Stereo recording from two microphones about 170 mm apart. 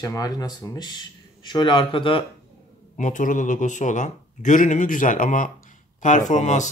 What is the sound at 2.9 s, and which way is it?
A man's voice, 45° left (ahead or behind).